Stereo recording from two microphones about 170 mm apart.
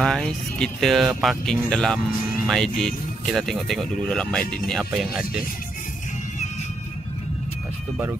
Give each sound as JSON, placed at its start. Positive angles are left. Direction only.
{"t": 0.0, "sound": "speech", "side_deg": 5}